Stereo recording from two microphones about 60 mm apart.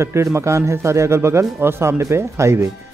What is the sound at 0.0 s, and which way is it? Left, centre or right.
Speech, right.